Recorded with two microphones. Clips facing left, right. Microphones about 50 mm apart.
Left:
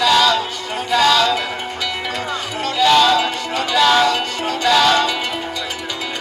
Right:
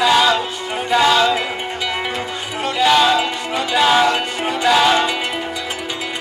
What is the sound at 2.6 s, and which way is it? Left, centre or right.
Music, centre.